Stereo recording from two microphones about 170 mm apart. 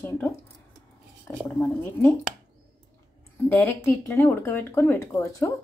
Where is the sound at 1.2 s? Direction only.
10° left (ahead or behind).